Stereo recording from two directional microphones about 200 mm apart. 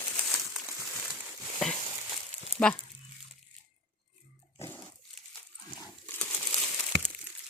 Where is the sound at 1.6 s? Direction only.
5° left (ahead or behind).